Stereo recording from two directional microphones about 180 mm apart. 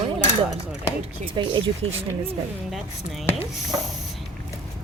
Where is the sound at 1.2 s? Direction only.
25° right (ahead or behind).